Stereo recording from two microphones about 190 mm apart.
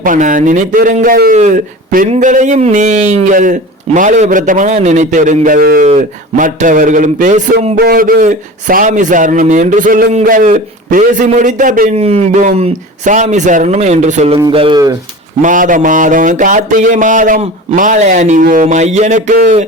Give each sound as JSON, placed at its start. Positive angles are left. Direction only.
{"t": 0.0, "sound": "speech", "side_deg": -45}
{"t": 15.4, "sound": "speech", "side_deg": -45}